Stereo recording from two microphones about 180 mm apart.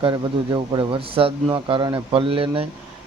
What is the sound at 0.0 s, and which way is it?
A man's voice, 25° right (ahead or behind).